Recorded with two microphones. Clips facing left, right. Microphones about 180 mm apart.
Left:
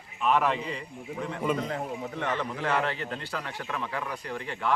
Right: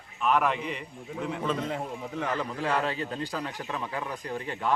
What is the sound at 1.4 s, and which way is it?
Speech, 10° left (ahead or behind).